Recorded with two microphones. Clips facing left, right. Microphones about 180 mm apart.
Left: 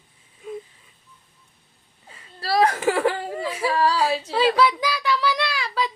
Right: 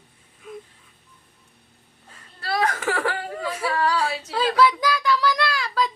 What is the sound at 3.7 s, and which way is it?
Female singing, 30° left (ahead or behind).